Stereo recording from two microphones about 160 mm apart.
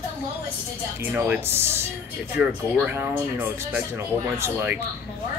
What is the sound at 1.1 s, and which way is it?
Speech, 10° right (ahead or behind).